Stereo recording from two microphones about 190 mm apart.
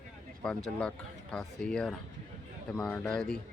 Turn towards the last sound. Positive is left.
turn(degrees=5)  # may be behind; listen again after turning